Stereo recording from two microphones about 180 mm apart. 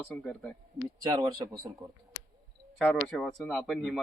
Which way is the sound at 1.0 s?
25° right (ahead or behind).